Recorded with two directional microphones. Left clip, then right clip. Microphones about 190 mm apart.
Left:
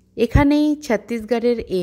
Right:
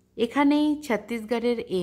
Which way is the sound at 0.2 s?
25° left (ahead or behind).